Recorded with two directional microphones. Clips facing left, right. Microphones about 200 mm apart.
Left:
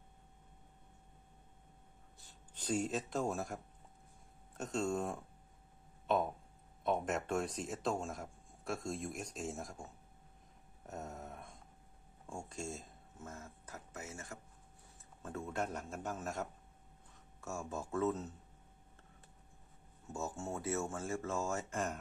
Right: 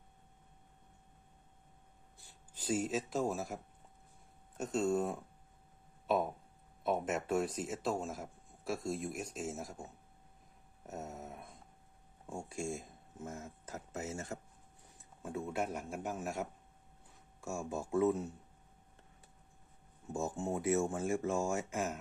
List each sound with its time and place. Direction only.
2.1 s speech: 10° right (ahead or behind)
6.0 s a sound: centre (ahead or behind)
6.8 s speech: centre (ahead or behind)
10.9 s a sound: 5° right (ahead or behind)
12.3 s speech: 10° right (ahead or behind); by 14.4 s 25° right (ahead or behind)
15.2 s speech: 10° right (ahead or behind)
20.1 s speech: 15° right (ahead or behind)